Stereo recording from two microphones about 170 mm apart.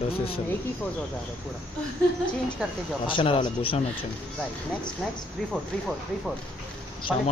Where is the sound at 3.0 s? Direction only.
30° left (ahead or behind).